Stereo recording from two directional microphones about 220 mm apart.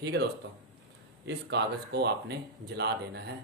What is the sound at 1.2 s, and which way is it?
Speech, 50° right (ahead or behind).